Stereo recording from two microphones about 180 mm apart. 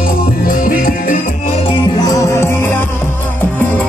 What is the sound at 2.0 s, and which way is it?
Music, 15° left (ahead or behind).